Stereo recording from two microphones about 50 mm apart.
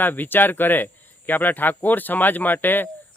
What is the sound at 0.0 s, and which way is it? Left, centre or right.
Speech, left.